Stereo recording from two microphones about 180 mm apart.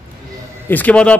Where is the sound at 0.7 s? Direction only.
10° left (ahead or behind).